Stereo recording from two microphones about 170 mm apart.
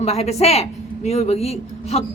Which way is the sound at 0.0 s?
40° left (ahead or behind).